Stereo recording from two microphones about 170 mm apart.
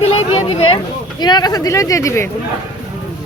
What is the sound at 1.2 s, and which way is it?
Speech, 25° left (ahead or behind).